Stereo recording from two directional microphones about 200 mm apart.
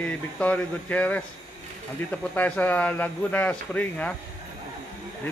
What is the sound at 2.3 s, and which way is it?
Speech, 10° left (ahead or behind).